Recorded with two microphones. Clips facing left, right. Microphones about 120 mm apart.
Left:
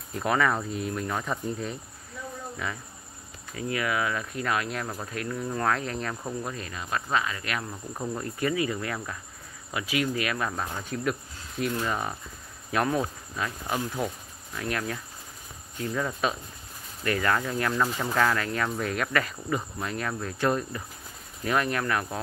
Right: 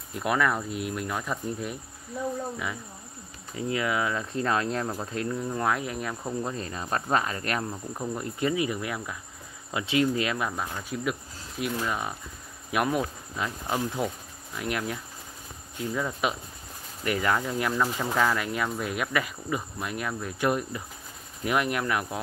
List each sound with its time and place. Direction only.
0.1 s speech: 5° right (ahead or behind)
3.5 s cricket: 20° right (ahead or behind)
4.8 s speech: 20° right (ahead or behind)
6.4 s speech: 30° right (ahead or behind)
7.9 s speech: centre (ahead or behind)
8.2 s speech: 20° right (ahead or behind)
9.7 s cricket: 25° right (ahead or behind)
10.3 s speech: 10° right (ahead or behind)
15.8 s speech: 5° right (ahead or behind)